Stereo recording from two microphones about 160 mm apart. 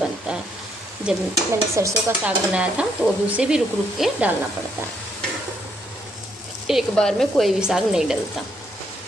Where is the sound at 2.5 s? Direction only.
5° right (ahead or behind).